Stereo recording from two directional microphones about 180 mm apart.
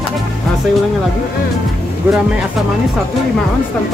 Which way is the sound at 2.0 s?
10° right (ahead or behind).